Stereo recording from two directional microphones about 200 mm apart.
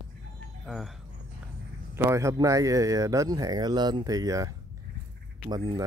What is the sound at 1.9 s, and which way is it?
Speech, 15° right (ahead or behind).